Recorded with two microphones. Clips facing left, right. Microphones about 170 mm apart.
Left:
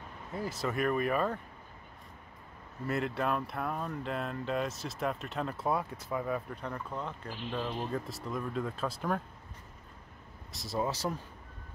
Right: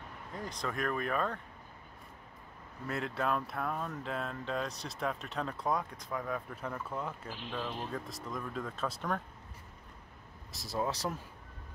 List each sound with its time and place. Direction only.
0.3 s speech: 5° left (ahead or behind)
2.9 s speech: centre (ahead or behind)
10.5 s speech: centre (ahead or behind)